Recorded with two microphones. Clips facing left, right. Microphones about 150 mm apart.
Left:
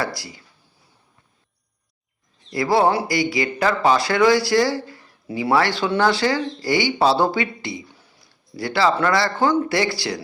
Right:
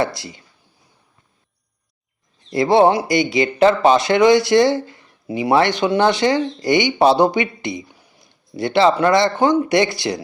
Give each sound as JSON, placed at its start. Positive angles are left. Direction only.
{"t": 0.0, "sound": "speech", "side_deg": -20}
{"t": 2.5, "sound": "speech", "side_deg": -25}